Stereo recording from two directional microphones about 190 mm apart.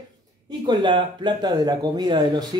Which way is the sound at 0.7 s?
25° right (ahead or behind).